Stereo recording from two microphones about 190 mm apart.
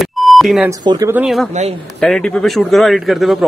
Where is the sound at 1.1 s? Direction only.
Centre (ahead or behind).